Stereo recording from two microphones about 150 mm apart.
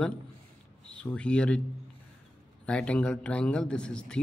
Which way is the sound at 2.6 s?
5° left (ahead or behind).